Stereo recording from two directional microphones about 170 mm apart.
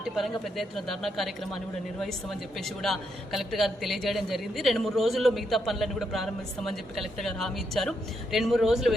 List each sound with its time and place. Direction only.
0.0 s a man's voice: centre (ahead or behind)